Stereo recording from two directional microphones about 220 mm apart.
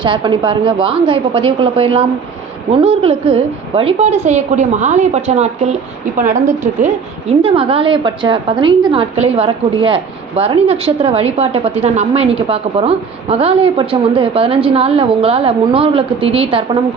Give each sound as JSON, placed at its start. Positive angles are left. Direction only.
{"t": 0.0, "sound": "a woman's voice", "side_deg": -20}